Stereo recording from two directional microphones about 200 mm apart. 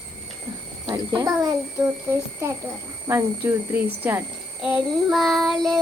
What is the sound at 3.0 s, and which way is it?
A child's voice, 10° right (ahead or behind).